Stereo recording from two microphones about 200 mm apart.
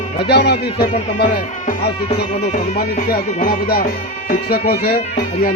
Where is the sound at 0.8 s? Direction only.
50° left (ahead or behind).